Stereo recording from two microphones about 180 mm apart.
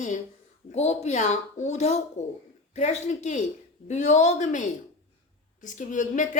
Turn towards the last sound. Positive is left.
turn(degrees=45)  # may be behind; listen again after turning